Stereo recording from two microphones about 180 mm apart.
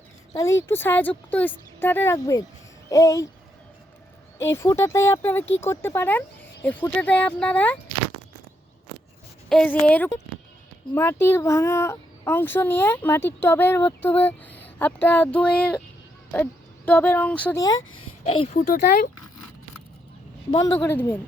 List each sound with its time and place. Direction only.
0.3 s a child's voice: 15° left (ahead or behind)
4.4 s a child's voice: 15° left (ahead or behind)
9.5 s a child's voice: 5° left (ahead or behind)
18.3 s speech: 30° left (ahead or behind); by 19.1 s 50° left (ahead or behind)
20.7 s a child's voice: 10° left (ahead or behind)